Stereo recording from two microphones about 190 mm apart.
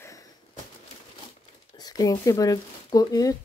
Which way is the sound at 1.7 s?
20° left (ahead or behind).